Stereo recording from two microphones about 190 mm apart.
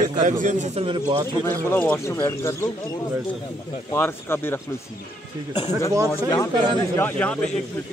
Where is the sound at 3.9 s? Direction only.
10° left (ahead or behind).